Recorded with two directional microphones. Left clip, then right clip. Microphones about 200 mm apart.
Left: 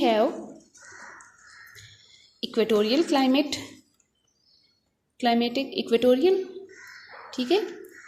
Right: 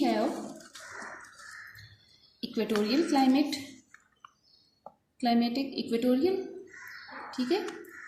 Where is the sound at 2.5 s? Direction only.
30° left (ahead or behind).